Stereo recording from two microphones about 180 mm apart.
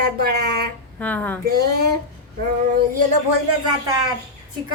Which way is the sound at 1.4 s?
60° right (ahead or behind).